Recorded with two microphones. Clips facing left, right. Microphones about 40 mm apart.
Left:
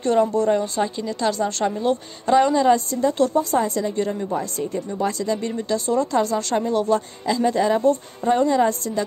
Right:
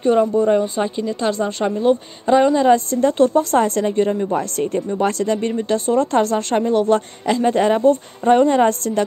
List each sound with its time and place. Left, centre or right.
0.0 s speech: centre
2.7 s speech: right
3.9 s speech: right
4.3 s speech: right